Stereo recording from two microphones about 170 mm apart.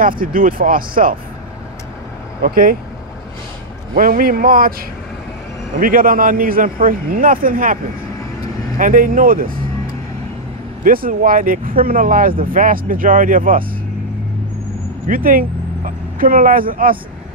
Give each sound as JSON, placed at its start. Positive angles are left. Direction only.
{"t": 0.0, "sound": "speech", "side_deg": -55}
{"t": 2.4, "sound": "speech", "side_deg": -60}
{"t": 3.9, "sound": "speech", "side_deg": -55}
{"t": 5.8, "sound": "speech", "side_deg": -55}
{"t": 10.8, "sound": "speech", "side_deg": -55}
{"t": 15.0, "sound": "speech", "side_deg": -55}